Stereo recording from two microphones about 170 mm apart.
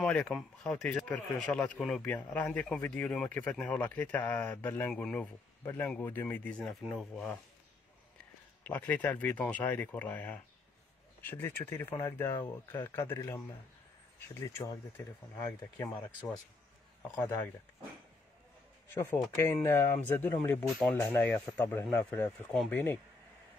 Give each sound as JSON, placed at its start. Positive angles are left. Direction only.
{"t": 0.0, "sound": "speech", "side_deg": 5}
{"t": 8.6, "sound": "speech", "side_deg": 10}
{"t": 17.1, "sound": "speech", "side_deg": 10}
{"t": 19.3, "sound": "speech", "side_deg": 15}